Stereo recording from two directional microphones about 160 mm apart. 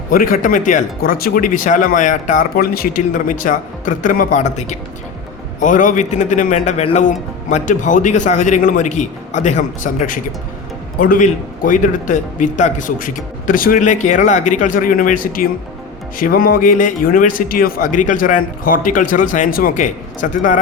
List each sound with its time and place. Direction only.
0.1 s a man's voice: 60° left (ahead or behind)